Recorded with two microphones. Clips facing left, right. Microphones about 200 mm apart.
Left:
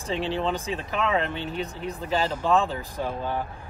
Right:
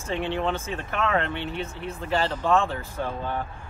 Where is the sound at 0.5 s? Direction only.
15° left (ahead or behind).